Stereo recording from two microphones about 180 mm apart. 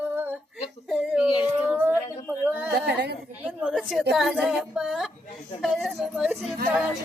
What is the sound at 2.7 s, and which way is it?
Speech, 60° right (ahead or behind).